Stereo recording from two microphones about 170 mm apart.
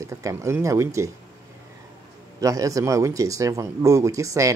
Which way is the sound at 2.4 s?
20° right (ahead or behind).